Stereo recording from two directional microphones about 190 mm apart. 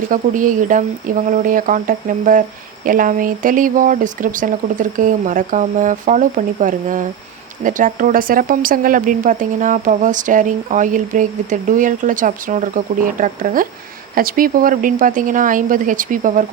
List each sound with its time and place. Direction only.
0.1 s speech: 45° right (ahead or behind)